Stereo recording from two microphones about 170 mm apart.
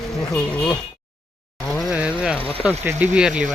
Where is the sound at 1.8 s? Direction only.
5° right (ahead or behind).